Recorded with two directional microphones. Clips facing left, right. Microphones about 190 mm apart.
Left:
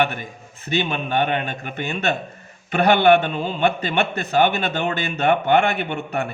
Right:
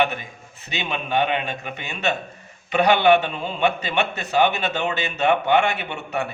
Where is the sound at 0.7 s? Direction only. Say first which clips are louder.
Left 3 dB; 50° left (ahead or behind).